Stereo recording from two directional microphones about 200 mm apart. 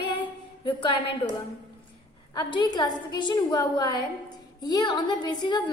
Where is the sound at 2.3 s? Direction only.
20° left (ahead or behind).